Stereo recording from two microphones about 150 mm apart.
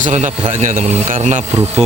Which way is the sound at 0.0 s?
50° right (ahead or behind).